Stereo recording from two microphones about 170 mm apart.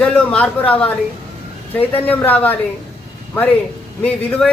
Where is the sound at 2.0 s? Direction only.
10° left (ahead or behind).